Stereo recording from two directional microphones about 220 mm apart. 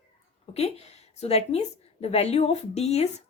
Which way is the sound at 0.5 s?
30° left (ahead or behind).